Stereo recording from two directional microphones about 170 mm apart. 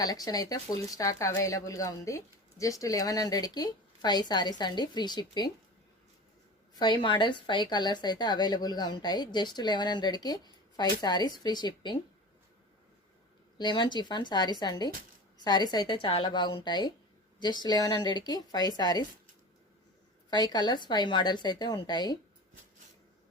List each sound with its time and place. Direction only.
0.0 s speech: 20° left (ahead or behind)
6.7 s speech: 25° left (ahead or behind)
13.6 s speech: 25° left (ahead or behind)
20.3 s speech: 25° left (ahead or behind)